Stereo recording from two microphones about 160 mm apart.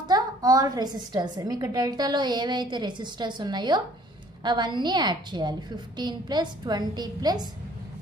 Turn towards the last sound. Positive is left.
turn(degrees=-25)  # may be behind; listen again after turning